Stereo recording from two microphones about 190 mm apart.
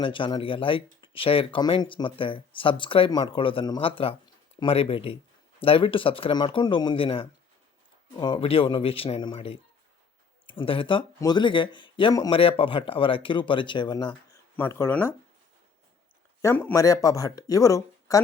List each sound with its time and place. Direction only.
0.0 s speech: 25° left (ahead or behind)
14.5 s speech: 10° left (ahead or behind)
16.4 s speech: 15° left (ahead or behind)